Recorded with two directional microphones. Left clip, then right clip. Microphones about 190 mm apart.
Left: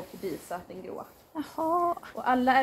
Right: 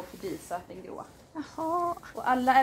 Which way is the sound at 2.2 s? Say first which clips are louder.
Even; 50° left (ahead or behind).